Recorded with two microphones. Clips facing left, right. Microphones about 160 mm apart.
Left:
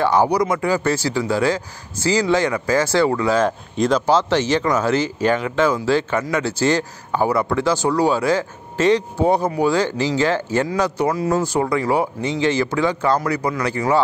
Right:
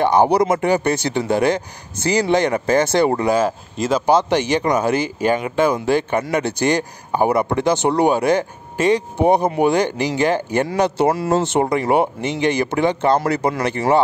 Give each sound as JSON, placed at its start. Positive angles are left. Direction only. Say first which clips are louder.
{"t": 0.0, "sound": "speech", "louder": "right 2 dB", "side_deg": -20}
{"t": 3.3, "sound": "speech", "louder": "left 1 dB", "side_deg": -5}
{"t": 4.0, "sound": "speech", "louder": "right 1 dB", "side_deg": -15}
{"t": 10.8, "sound": "speech", "louder": "right 3 dB", "side_deg": -30}